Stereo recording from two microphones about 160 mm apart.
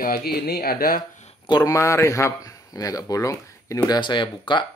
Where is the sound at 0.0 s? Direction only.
75° left (ahead or behind).